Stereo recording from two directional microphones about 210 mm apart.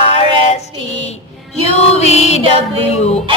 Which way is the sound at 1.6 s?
30° left (ahead or behind).